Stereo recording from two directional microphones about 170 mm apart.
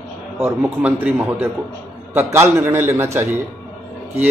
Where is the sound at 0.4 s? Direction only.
10° right (ahead or behind).